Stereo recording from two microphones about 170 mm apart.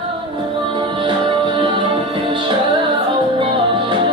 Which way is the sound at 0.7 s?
30° right (ahead or behind).